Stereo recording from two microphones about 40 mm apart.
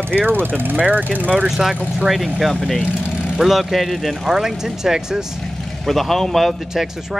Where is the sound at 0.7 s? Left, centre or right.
Right.